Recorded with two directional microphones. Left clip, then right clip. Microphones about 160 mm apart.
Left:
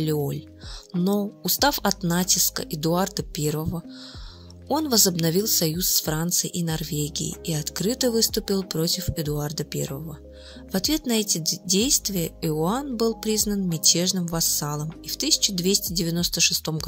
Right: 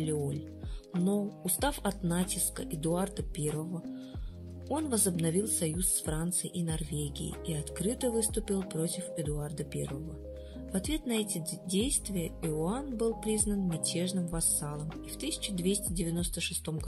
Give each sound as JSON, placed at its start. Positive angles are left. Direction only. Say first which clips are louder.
{"t": 0.0, "sound": "speech", "louder": "left 8 dB", "side_deg": 45}